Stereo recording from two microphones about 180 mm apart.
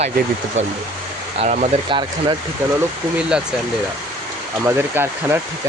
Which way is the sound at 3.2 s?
5° right (ahead or behind).